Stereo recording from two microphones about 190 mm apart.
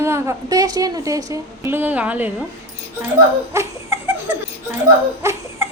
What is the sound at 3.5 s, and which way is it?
Speech, 15° right (ahead or behind).